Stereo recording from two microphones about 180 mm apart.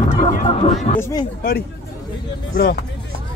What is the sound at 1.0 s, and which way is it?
Speech, 20° left (ahead or behind).